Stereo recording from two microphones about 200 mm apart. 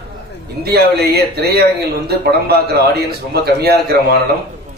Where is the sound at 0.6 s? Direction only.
50° right (ahead or behind).